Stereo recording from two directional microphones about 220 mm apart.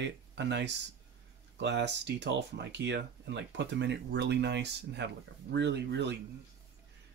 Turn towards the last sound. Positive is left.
turn(degrees=-50)  # may be behind; listen again after turning